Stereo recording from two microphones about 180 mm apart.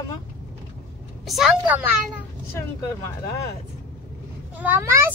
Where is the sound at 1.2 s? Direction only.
Centre (ahead or behind).